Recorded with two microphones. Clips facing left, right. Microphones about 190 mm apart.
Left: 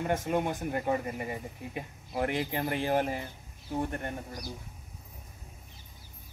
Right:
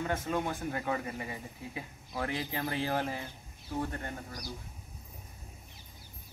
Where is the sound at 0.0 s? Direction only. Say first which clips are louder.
Left 3 dB; 15° left (ahead or behind).